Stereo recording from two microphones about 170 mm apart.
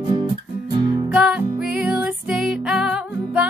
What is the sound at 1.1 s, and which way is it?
Music, 5° right (ahead or behind).